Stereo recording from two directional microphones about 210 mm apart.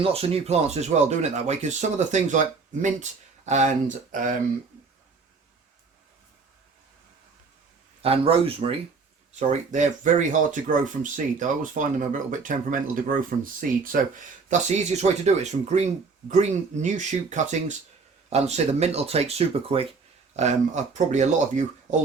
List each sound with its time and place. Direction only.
0.0 s speech: 25° right (ahead or behind)
8.0 s speech: 25° right (ahead or behind)